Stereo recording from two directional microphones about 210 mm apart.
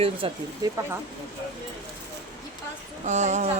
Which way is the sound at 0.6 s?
15° right (ahead or behind).